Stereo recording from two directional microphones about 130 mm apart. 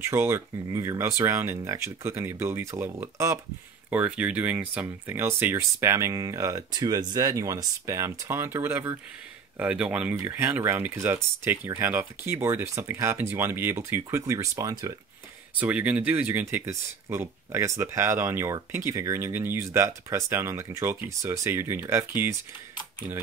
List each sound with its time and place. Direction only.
0.1 s speech: 20° right (ahead or behind)
15.5 s speech: 10° right (ahead or behind)